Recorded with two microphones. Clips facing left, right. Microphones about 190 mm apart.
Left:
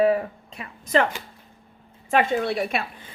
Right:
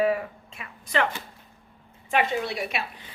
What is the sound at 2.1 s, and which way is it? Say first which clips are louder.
Speech: left 4 dB; 50° left (ahead or behind).